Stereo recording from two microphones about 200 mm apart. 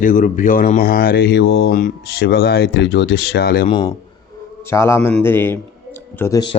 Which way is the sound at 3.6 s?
25° left (ahead or behind).